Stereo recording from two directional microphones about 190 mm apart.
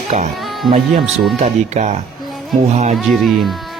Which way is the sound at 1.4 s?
35° right (ahead or behind).